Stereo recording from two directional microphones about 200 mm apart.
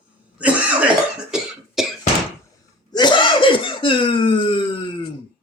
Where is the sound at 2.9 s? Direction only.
20° left (ahead or behind).